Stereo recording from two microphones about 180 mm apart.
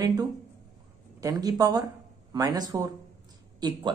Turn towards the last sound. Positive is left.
turn(degrees=-25)  # may be behind; listen again after turning